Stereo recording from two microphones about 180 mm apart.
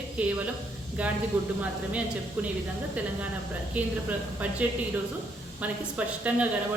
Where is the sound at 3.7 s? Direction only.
10° right (ahead or behind).